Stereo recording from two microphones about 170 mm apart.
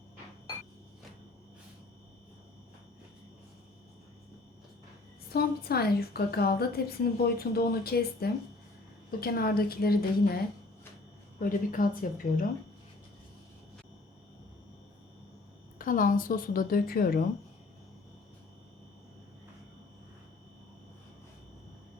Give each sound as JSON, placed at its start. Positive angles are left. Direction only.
{"t": 5.3, "sound": "a woman's voice", "side_deg": 65}
{"t": 11.3, "sound": "a woman's voice", "side_deg": 55}
{"t": 15.8, "sound": "a woman's voice", "side_deg": 55}